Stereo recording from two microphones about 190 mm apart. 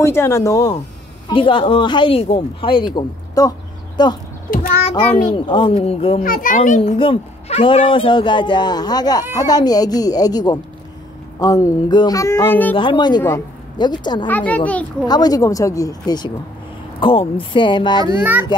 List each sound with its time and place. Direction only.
0.0 s a child's voice: 15° left (ahead or behind)
1.3 s a woman's voice: 25° left (ahead or behind)
4.5 s a child's voice: 50° left (ahead or behind)
5.3 s a woman's voice: 25° left (ahead or behind)
6.2 s a child's voice: 45° left (ahead or behind)
6.8 s a woman's voice: 30° left (ahead or behind); by 12.7 s 10° left (ahead or behind)
12.7 s a woman's voice: 25° left (ahead or behind)
14.2 s a child's voice: 10° left (ahead or behind)
15.0 s a woman's voice: 20° left (ahead or behind)
18.2 s a child's voice: 10° right (ahead or behind)